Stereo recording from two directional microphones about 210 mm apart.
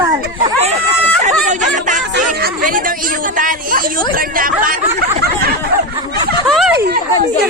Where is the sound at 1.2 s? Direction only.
35° right (ahead or behind).